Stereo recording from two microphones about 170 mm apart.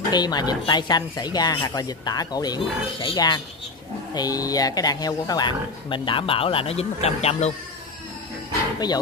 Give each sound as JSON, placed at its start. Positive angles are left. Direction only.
{"t": 0.1, "sound": "speech", "side_deg": 25}
{"t": 8.7, "sound": "speech", "side_deg": 25}